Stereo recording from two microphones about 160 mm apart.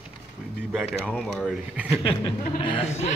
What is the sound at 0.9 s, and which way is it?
Speech, centre (ahead or behind).